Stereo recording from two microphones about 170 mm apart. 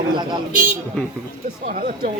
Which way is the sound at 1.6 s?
65° right (ahead or behind).